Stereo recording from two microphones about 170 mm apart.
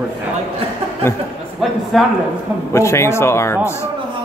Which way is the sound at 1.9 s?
Centre (ahead or behind).